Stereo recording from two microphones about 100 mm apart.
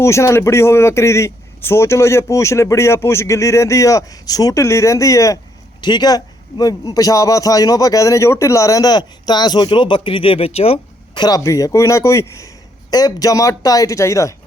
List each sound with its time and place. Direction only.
0.0 s speech: 30° left (ahead or behind)
5.8 s a man's voice: 45° left (ahead or behind); by 10.8 s 90° left
11.1 s speech: 45° left (ahead or behind)
11.3 s a man's voice: 30° left (ahead or behind)